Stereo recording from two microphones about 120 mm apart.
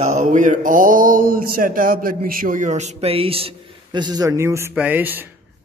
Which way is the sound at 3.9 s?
35° right (ahead or behind).